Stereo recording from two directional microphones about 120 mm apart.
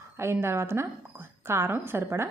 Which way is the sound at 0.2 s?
20° right (ahead or behind).